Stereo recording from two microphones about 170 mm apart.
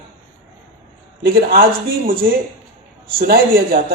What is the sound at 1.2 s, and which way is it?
A man's voice, 60° right (ahead or behind).